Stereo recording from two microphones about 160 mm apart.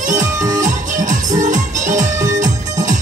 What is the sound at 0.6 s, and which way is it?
Music, 50° right (ahead or behind).